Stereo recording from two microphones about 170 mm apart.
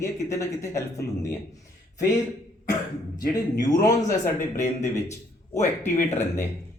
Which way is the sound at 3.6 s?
20° left (ahead or behind).